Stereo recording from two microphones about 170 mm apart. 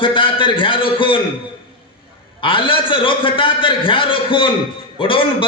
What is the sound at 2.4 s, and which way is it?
A man's voice, 30° left (ahead or behind).